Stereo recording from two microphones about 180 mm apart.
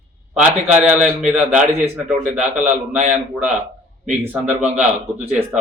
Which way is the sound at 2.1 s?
5° right (ahead or behind).